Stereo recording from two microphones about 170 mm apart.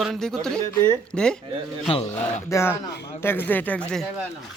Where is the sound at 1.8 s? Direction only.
35° left (ahead or behind).